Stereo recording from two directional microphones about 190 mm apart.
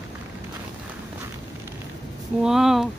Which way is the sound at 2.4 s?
Centre (ahead or behind).